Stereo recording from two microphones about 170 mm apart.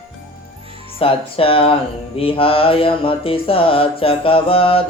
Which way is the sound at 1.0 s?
35° left (ahead or behind).